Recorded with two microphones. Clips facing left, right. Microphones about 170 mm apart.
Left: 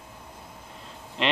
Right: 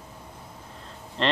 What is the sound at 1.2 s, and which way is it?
Speech, 5° left (ahead or behind).